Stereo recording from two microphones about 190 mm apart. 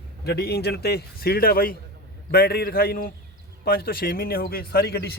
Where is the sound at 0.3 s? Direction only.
60° left (ahead or behind).